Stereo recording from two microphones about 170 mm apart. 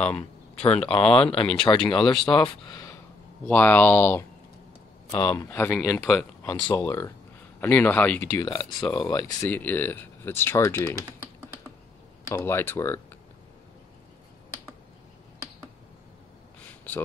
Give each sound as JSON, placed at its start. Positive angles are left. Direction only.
{"t": 0.0, "sound": "speech", "side_deg": 5}
{"t": 0.9, "sound": "speech", "side_deg": 35}
{"t": 3.4, "sound": "speech", "side_deg": 10}
{"t": 5.1, "sound": "speech", "side_deg": 25}
{"t": 8.3, "sound": "speech", "side_deg": 20}
{"t": 12.3, "sound": "speech", "side_deg": 15}